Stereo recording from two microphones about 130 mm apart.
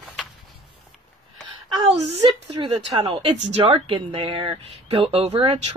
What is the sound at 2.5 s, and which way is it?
Speech, 40° right (ahead or behind).